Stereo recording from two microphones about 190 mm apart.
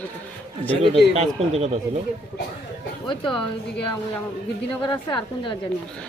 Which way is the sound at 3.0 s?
25° left (ahead or behind).